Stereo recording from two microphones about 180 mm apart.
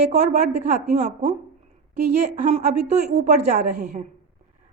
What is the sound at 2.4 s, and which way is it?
A woman's voice, 35° right (ahead or behind).